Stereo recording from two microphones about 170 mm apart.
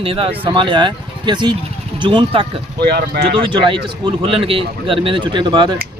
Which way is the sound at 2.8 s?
70° right (ahead or behind).